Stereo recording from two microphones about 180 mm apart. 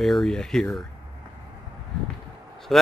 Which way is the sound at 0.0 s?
Centre (ahead or behind).